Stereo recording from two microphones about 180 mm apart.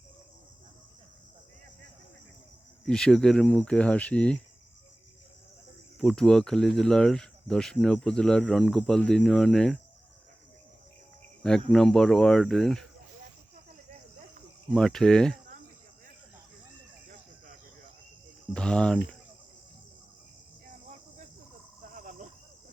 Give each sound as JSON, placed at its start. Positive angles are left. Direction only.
{"t": 2.8, "sound": "speech", "side_deg": 5}
{"t": 6.0, "sound": "speech", "side_deg": 5}
{"t": 11.7, "sound": "speech", "side_deg": 5}
{"t": 14.7, "sound": "speech", "side_deg": 5}
{"t": 18.5, "sound": "cricket", "side_deg": 5}
{"t": 21.8, "sound": "cricket", "side_deg": -50}